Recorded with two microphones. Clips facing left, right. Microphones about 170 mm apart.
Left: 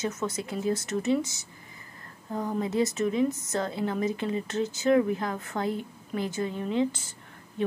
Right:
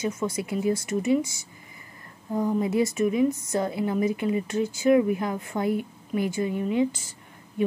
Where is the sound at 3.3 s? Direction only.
25° left (ahead or behind).